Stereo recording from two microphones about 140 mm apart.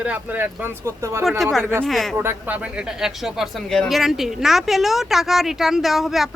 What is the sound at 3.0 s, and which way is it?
Speech, centre (ahead or behind).